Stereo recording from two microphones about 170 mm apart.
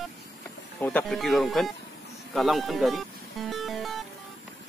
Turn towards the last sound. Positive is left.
turn(degrees=0)  # may be behind; listen again after turning